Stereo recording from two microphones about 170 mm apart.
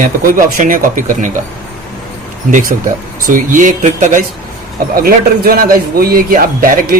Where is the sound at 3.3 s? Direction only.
50° right (ahead or behind).